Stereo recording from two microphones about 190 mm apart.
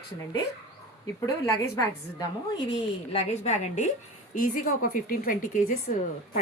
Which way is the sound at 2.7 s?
35° left (ahead or behind).